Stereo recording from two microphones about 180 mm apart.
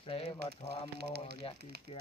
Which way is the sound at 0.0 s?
30° left (ahead or behind).